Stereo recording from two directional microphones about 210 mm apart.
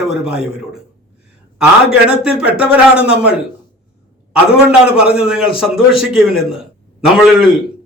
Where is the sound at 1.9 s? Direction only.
5° right (ahead or behind).